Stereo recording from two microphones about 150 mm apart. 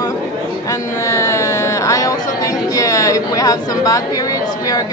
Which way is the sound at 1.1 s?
20° left (ahead or behind).